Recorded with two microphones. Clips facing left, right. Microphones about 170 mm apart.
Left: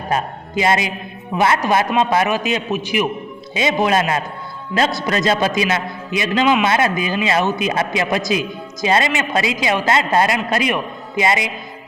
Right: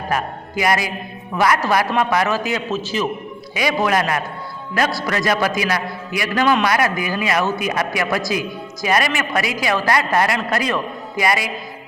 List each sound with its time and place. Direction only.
0.1 s a man's voice: 25° left (ahead or behind)